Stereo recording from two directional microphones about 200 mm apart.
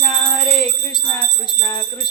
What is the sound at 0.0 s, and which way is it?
Music, 15° left (ahead or behind).